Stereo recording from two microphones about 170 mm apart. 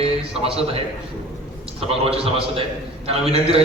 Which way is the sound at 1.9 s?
35° right (ahead or behind).